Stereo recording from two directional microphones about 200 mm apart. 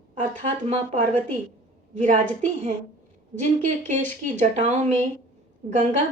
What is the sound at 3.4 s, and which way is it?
A woman's voice, 35° right (ahead or behind).